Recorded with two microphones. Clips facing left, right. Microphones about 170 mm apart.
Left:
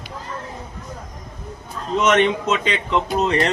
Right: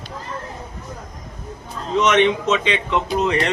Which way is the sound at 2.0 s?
50° left (ahead or behind).